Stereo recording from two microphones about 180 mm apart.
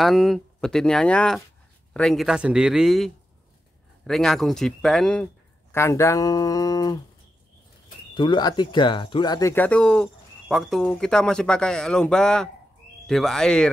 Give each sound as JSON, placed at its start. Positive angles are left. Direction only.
{"t": 0.0, "sound": "a man's voice", "side_deg": 0}
{"t": 8.1, "sound": "a man's voice", "side_deg": 25}